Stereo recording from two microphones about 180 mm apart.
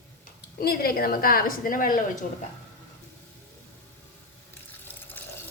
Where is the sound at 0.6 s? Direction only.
55° left (ahead or behind).